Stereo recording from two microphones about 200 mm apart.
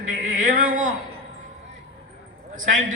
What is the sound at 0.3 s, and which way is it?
Speech, 40° right (ahead or behind).